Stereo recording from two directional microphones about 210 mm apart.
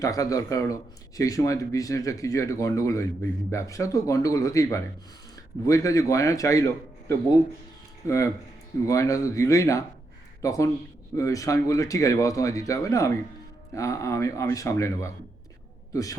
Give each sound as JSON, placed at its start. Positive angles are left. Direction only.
{"t": 0.0, "sound": "speech", "side_deg": 15}
{"t": 8.0, "sound": "a man's voice", "side_deg": 15}